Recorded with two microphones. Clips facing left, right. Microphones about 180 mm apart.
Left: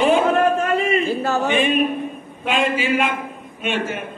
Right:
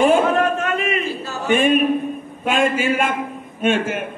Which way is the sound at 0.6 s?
30° left (ahead or behind).